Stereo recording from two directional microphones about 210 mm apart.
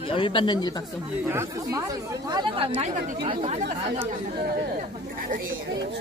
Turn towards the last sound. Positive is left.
turn(degrees=-40)  # may be behind; listen again after turning